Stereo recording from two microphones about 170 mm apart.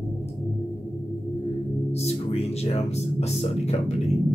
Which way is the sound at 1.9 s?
40° left (ahead or behind).